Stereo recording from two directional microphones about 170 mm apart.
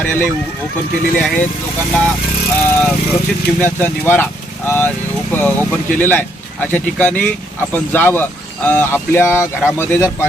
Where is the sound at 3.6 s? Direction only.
10° left (ahead or behind).